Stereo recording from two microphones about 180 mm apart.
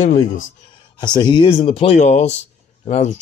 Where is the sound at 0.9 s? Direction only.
25° left (ahead or behind).